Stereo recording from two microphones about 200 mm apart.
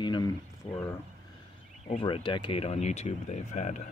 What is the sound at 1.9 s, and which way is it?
Speech, 30° left (ahead or behind).